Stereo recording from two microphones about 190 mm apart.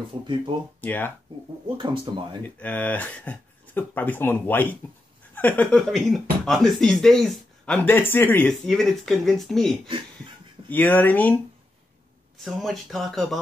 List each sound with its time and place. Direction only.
0.0 s speech: 25° right (ahead or behind)
0.7 s speech: 10° left (ahead or behind)
1.8 s speech: 25° right (ahead or behind)
2.4 s speech: 10° left (ahead or behind)
12.4 s speech: centre (ahead or behind)